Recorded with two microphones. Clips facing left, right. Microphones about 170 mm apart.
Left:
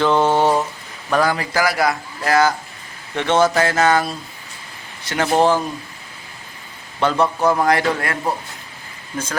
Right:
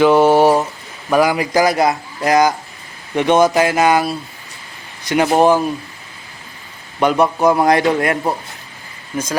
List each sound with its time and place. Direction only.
0.0 s a sound: 10° right (ahead or behind)
1.1 s a man's voice: 10° right (ahead or behind)
7.0 s a man's voice: 15° right (ahead or behind)